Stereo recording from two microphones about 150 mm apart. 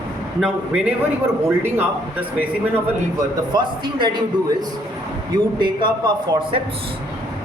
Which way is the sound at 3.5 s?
30° right (ahead or behind).